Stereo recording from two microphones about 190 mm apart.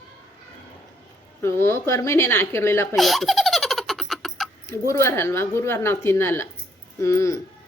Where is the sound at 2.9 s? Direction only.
Centre (ahead or behind).